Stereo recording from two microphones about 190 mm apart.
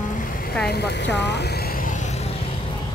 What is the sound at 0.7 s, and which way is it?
Speech, 60° left (ahead or behind).